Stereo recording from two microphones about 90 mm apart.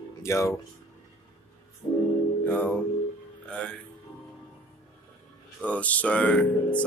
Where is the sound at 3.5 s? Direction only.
15° left (ahead or behind).